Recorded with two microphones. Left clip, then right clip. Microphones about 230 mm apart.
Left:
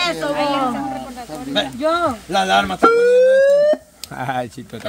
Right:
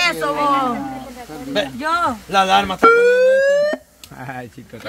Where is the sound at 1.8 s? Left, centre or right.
Right.